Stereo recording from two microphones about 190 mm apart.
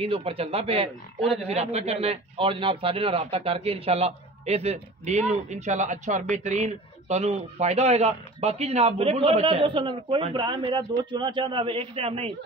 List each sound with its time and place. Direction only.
0.0 s speech: 30° right (ahead or behind)